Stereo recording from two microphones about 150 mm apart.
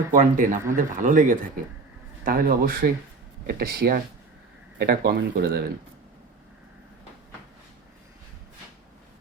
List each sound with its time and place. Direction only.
0.1 s speech: 60° right (ahead or behind)
2.2 s speech: 75° right (ahead or behind); by 5.6 s 90° right